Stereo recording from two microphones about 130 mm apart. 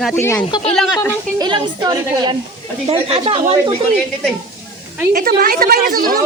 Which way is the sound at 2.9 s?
45° right (ahead or behind).